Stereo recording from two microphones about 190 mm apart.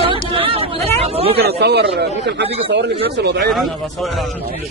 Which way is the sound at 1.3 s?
55° right (ahead or behind).